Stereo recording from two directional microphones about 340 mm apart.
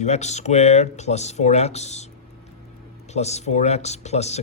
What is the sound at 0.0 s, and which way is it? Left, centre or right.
Speech, centre.